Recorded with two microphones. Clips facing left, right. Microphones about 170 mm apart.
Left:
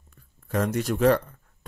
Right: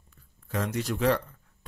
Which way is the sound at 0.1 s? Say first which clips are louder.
Left 5 dB; 50° left (ahead or behind).